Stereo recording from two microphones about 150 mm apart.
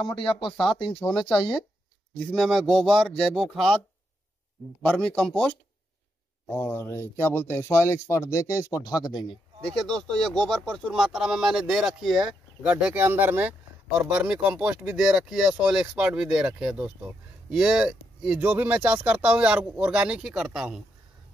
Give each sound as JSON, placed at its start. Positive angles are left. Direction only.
{"t": 0.1, "sound": "speech", "side_deg": 35}
{"t": 0.8, "sound": "speech", "side_deg": 5}
{"t": 4.8, "sound": "speech", "side_deg": 5}
{"t": 9.7, "sound": "speech", "side_deg": 5}